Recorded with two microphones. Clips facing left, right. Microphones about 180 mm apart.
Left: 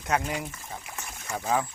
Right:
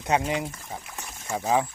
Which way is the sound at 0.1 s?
20° right (ahead or behind).